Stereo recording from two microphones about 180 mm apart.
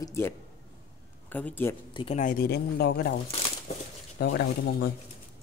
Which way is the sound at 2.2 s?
50° left (ahead or behind).